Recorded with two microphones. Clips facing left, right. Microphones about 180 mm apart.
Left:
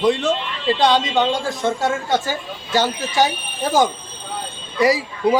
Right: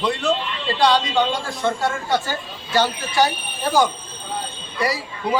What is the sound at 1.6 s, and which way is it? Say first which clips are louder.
Speech: right 1 dB; 20° left (ahead or behind).